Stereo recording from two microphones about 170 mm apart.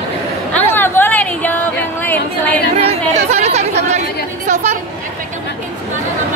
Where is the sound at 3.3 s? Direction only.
40° right (ahead or behind).